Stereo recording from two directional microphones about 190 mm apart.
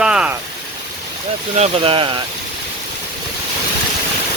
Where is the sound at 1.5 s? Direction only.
30° right (ahead or behind).